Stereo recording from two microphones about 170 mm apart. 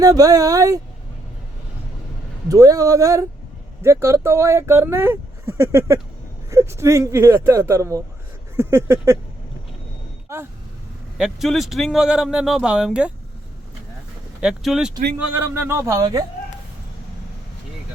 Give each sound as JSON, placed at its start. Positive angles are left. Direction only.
{"t": 0.0, "sound": "speech", "side_deg": -20}
{"t": 2.5, "sound": "speech", "side_deg": -20}
{"t": 10.3, "sound": "speech", "side_deg": -15}
{"t": 11.2, "sound": "speech", "side_deg": 0}
{"t": 14.4, "sound": "speech", "side_deg": 0}
{"t": 15.3, "sound": "speech", "side_deg": -10}